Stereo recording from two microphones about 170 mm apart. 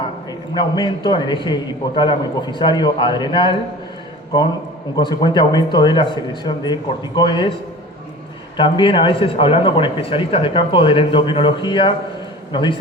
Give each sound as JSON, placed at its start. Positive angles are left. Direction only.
{"t": 0.5, "sound": "speech", "side_deg": 30}
{"t": 4.9, "sound": "speech", "side_deg": 25}
{"t": 8.5, "sound": "a man's voice", "side_deg": 30}